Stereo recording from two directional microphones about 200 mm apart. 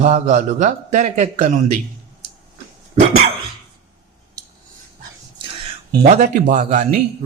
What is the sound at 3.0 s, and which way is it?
Dog, 35° right (ahead or behind).